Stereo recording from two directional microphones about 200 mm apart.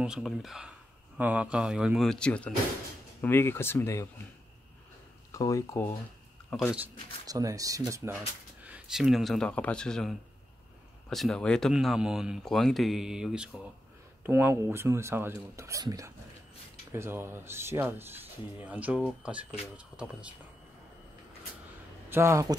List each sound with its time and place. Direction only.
0.0 s speech: 5° right (ahead or behind); by 4.1 s 15° left (ahead or behind)
5.3 s speech: 15° left (ahead or behind)
6.5 s speech: centre (ahead or behind)
7.2 s speech: 15° right (ahead or behind)
22.1 s speech: 15° right (ahead or behind)